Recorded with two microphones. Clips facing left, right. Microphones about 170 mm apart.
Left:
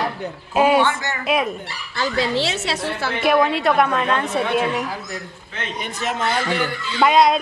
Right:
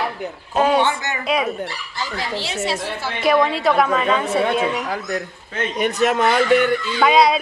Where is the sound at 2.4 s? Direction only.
75° left (ahead or behind).